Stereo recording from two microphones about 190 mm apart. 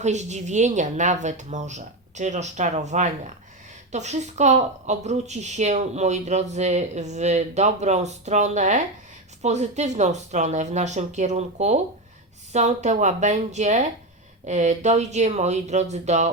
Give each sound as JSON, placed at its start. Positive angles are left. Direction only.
{"t": 0.0, "sound": "a woman's voice", "side_deg": -40}